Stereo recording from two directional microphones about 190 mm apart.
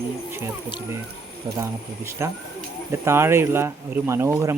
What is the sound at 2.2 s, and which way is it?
Speech, 15° right (ahead or behind).